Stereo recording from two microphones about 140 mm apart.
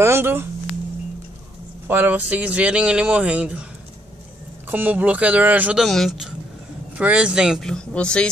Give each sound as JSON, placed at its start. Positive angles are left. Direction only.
{"t": 0.0, "sound": "speech", "side_deg": -15}
{"t": 1.9, "sound": "speech", "side_deg": -15}
{"t": 4.6, "sound": "speech", "side_deg": -15}